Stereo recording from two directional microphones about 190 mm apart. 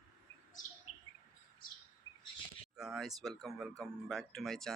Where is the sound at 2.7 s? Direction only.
Centre (ahead or behind).